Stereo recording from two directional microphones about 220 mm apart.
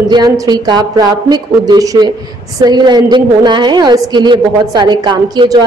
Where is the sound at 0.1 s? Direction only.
20° right (ahead or behind).